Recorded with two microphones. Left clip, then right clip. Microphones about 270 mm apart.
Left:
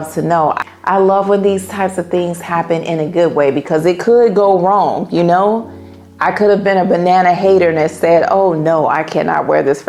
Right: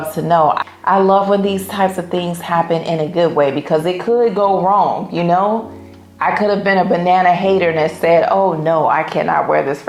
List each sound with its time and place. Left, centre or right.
0.9 s a woman's voice: left
3.8 s speech: left